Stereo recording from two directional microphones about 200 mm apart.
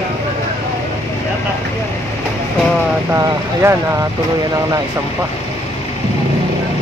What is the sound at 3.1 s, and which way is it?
Speech, 15° right (ahead or behind).